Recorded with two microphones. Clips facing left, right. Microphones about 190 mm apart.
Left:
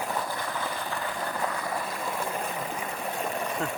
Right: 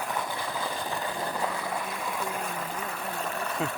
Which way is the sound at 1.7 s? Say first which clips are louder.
Left 1 dB; centre (ahead or behind).